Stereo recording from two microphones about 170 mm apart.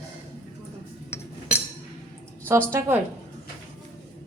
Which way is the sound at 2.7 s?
15° right (ahead or behind).